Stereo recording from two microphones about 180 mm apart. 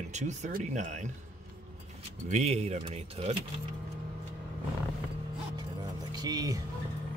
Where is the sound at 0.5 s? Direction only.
50° right (ahead or behind).